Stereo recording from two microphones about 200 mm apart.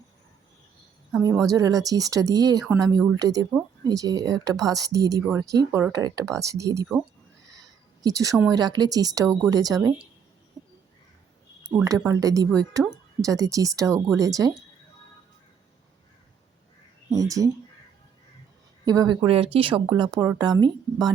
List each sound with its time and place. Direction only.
1.5 s speech: 20° right (ahead or behind)
6.8 s speech: centre (ahead or behind)
8.0 s speech: 15° right (ahead or behind)
11.7 s speech: 15° right (ahead or behind)
17.1 s speech: 15° right (ahead or behind)
18.9 s speech: 20° right (ahead or behind)